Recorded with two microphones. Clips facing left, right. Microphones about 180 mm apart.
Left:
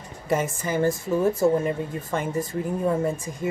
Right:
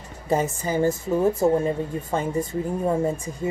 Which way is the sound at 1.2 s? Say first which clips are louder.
Right 1 dB; 25° right (ahead or behind).